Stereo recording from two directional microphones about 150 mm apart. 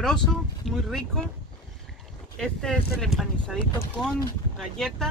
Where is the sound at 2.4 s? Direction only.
5° left (ahead or behind).